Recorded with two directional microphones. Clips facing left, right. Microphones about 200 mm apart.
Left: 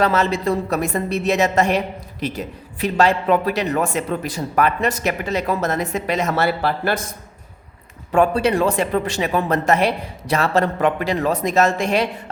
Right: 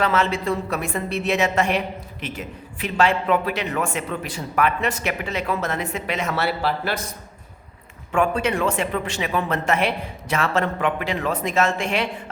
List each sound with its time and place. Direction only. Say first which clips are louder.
0.0 s a man's voice: left 3 dB; 40° left (ahead or behind)
8.1 s a man's voice: left 5 dB; 35° left (ahead or behind)